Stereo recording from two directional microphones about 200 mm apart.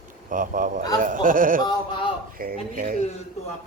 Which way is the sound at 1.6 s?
20° left (ahead or behind).